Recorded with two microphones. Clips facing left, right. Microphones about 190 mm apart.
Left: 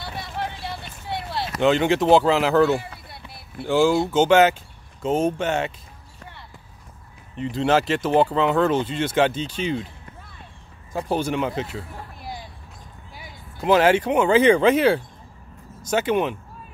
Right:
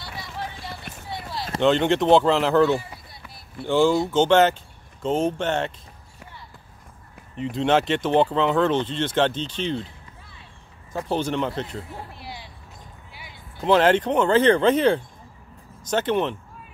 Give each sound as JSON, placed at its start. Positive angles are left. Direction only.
{"t": 0.0, "sound": "vehicle", "side_deg": 60}
{"t": 1.0, "sound": "a sound", "side_deg": 65}
{"t": 1.6, "sound": "speech", "side_deg": 5}
{"t": 3.3, "sound": "a sound", "side_deg": 65}
{"t": 3.6, "sound": "speech", "side_deg": 5}
{"t": 7.3, "sound": "speech", "side_deg": 0}
{"t": 10.9, "sound": "speech", "side_deg": 10}
{"t": 12.2, "sound": "a sound", "side_deg": 45}
{"t": 13.6, "sound": "speech", "side_deg": 10}